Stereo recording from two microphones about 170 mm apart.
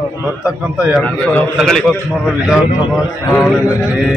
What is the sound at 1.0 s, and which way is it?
A man's voice, 5° left (ahead or behind).